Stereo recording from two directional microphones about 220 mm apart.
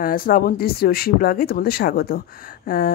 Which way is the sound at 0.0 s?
40° left (ahead or behind).